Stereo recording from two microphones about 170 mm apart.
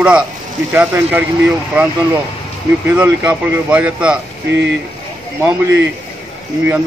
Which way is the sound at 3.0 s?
5° right (ahead or behind).